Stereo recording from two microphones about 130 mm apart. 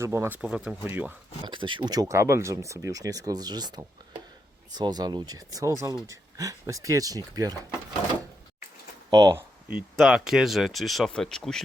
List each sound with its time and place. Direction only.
0.0 s speech: 20° right (ahead or behind)
0.4 s speech: 5° right (ahead or behind)
1.5 s speech: 40° right (ahead or behind)
9.0 s speech: 30° right (ahead or behind)
9.9 s speech: centre (ahead or behind)